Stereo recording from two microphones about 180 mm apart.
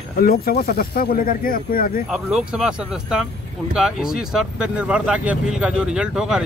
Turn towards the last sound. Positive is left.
turn(degrees=-5)  # may be behind; listen again after turning